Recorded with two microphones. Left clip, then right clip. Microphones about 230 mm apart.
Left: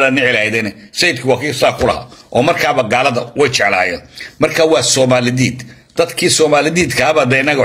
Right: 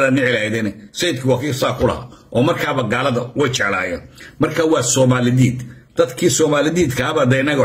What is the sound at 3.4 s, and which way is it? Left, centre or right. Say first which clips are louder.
A man's voice: left 7 dB; centre.